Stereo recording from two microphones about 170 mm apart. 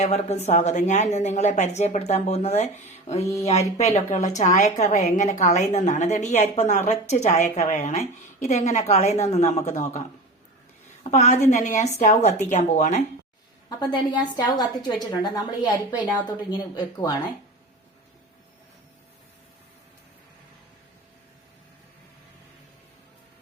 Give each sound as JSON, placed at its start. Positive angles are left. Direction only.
{"t": 0.0, "sound": "a woman's voice", "side_deg": 40}
{"t": 11.0, "sound": "a woman's voice", "side_deg": 40}
{"t": 13.7, "sound": "a woman's voice", "side_deg": 25}